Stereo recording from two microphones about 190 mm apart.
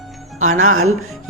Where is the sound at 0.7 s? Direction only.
90° right.